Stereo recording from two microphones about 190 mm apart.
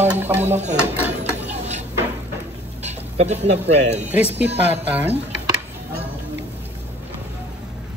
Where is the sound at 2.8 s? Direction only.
35° right (ahead or behind).